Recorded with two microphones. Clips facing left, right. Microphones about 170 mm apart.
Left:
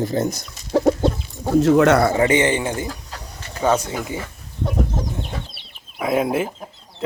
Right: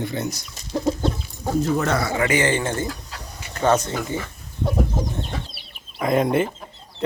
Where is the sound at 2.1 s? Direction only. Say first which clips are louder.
Left 3 dB; 25° left (ahead or behind); by 4.2 s 10° left (ahead or behind).